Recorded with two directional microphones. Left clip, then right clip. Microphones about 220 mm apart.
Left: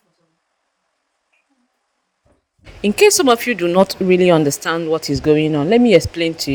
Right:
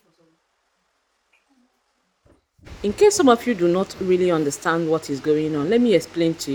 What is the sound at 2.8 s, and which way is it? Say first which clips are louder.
Speech: left 4 dB; 40° left (ahead or behind).